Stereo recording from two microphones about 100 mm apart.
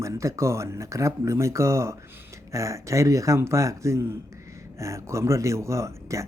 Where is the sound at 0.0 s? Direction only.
30° right (ahead or behind).